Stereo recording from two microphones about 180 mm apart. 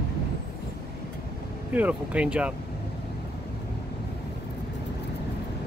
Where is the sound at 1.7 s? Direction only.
10° right (ahead or behind).